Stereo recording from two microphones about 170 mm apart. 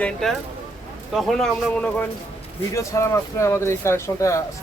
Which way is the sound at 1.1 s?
Centre (ahead or behind).